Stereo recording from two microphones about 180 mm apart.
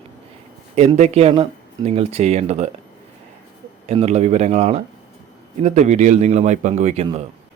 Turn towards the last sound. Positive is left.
turn(degrees=-35)  # may be behind; listen again after turning